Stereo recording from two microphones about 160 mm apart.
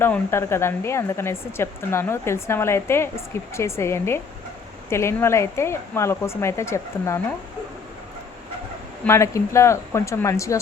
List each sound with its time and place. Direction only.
0.0 s speech: 15° left (ahead or behind)
9.0 s speech: 15° left (ahead or behind)